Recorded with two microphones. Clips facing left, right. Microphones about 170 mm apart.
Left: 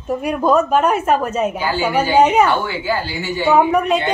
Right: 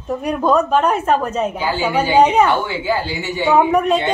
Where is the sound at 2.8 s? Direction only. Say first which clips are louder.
Right 1 dB; 20° right (ahead or behind).